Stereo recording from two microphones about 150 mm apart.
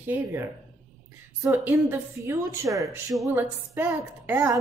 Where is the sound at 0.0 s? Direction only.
15° right (ahead or behind).